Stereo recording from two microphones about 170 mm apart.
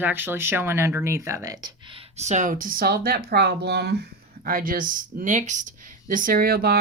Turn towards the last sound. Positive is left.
turn(degrees=-65)  # may be behind; listen again after turning